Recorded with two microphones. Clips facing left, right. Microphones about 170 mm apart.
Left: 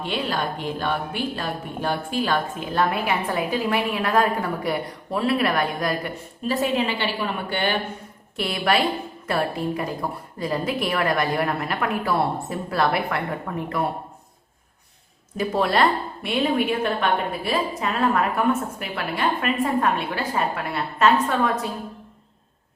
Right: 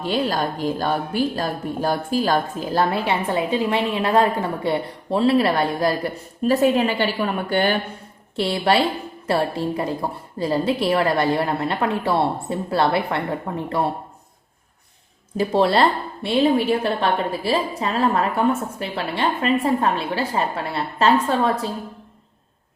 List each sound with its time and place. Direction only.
0.0 s speech: 40° right (ahead or behind)
6.5 s a woman's voice: 45° right (ahead or behind)
8.4 s a woman's voice: 30° right (ahead or behind)
15.4 s a woman's voice: 30° right (ahead or behind)